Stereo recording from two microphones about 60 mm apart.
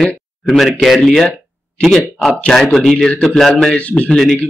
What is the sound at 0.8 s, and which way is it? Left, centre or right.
Speech, centre.